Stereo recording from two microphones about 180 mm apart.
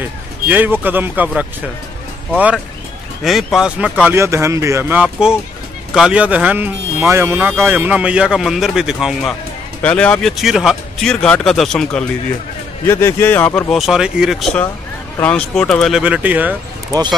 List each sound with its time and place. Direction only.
0.5 s speech: 10° right (ahead or behind)
12.8 s speech: 15° left (ahead or behind); by 16.5 s 10° right (ahead or behind)
16.9 s speech: 20° right (ahead or behind)